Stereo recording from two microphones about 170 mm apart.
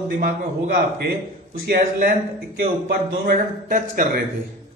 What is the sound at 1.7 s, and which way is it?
Speech, 60° right (ahead or behind).